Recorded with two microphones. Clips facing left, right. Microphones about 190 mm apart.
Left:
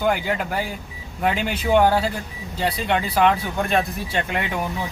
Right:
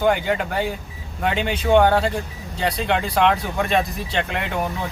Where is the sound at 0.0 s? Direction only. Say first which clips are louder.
Right 2 dB; centre (ahead or behind).